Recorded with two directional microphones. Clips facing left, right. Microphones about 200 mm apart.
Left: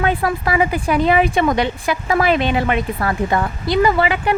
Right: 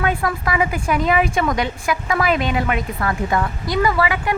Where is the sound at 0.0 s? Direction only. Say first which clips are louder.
Left 3 dB; 30° left (ahead or behind).